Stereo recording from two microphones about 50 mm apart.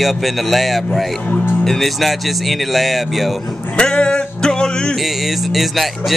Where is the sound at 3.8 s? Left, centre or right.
Centre.